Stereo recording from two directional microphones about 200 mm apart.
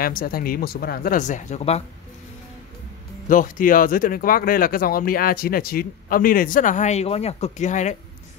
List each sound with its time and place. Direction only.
0.0 s speech: 45° left (ahead or behind)
3.3 s speech: 45° left (ahead or behind)